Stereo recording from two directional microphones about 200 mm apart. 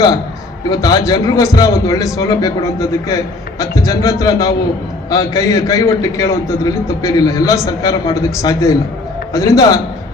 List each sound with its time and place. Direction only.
0.7 s a man's voice: 20° left (ahead or behind)